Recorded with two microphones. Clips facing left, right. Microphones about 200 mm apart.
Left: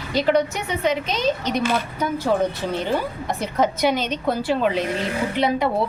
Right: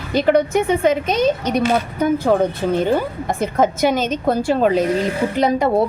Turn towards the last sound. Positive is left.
turn(degrees=-45)  # may be behind; listen again after turning